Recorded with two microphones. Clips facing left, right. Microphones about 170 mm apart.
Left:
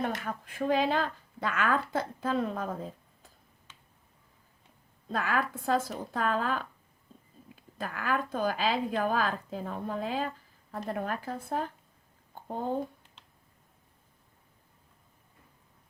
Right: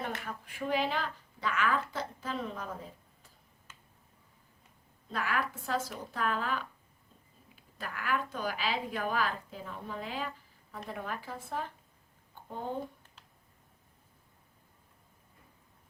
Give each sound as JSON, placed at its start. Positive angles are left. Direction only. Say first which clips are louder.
{"t": 0.0, "sound": "speech", "louder": "left 5 dB", "side_deg": 50}
{"t": 5.1, "sound": "speech", "louder": "left 4 dB", "side_deg": 50}
{"t": 7.9, "sound": "speech", "louder": "left 4 dB", "side_deg": 50}